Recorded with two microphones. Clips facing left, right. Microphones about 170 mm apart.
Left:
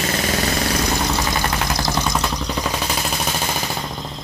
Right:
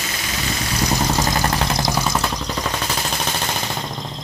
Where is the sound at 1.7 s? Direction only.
15° right (ahead or behind).